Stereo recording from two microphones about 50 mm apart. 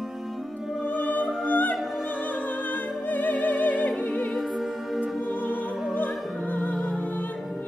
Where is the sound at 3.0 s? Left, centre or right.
Left.